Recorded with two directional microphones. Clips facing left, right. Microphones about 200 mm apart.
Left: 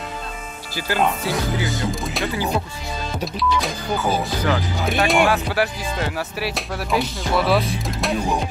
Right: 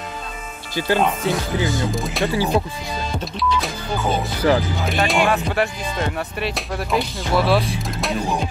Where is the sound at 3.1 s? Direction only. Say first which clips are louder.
Left 1 dB; centre (ahead or behind).